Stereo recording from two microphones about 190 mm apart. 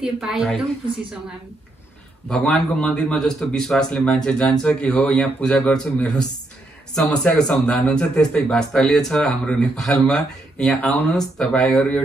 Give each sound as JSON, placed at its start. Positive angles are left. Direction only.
{"t": 0.0, "sound": "speech", "side_deg": -5}
{"t": 2.2, "sound": "speech", "side_deg": 5}
{"t": 7.2, "sound": "speech", "side_deg": 5}